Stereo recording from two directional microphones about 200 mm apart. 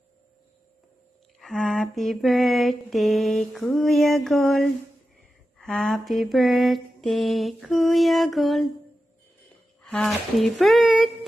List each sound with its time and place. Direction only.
1.4 s mantra: centre (ahead or behind)
9.8 s mantra: centre (ahead or behind)